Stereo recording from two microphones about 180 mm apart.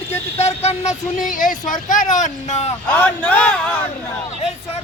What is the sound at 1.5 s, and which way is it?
Speech, 45° left (ahead or behind).